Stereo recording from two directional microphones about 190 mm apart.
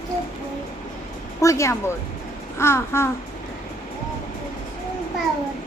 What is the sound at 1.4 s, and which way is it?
A woman's voice, 15° left (ahead or behind).